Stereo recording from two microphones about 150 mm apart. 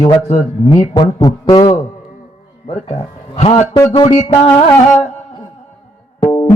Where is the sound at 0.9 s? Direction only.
25° left (ahead or behind).